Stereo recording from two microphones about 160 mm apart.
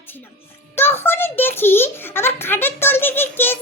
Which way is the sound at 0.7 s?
15° left (ahead or behind).